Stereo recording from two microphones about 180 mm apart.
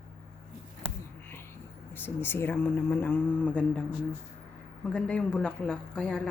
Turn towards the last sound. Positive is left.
turn(degrees=5)  # may be behind; listen again after turning